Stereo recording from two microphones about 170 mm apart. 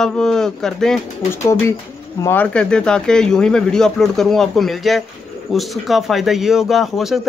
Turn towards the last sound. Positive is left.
turn(degrees=0)  # may be behind; listen again after turning